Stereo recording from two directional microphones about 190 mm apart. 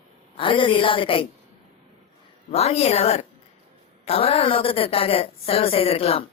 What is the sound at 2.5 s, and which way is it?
A woman's voice, 35° left (ahead or behind).